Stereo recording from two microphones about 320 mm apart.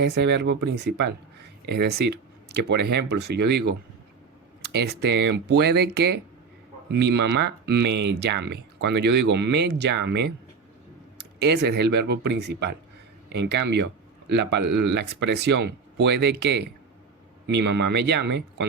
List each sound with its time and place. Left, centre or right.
0.0 s speech: right